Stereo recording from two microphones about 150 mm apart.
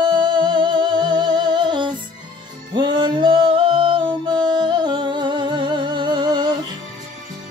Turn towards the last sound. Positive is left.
turn(degrees=-30)  # may be behind; listen again after turning